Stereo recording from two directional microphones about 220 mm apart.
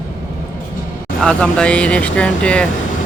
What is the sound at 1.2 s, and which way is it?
Speech, 5° left (ahead or behind).